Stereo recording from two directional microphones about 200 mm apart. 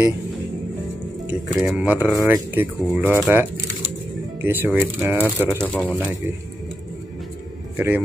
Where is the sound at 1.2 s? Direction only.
5° right (ahead or behind).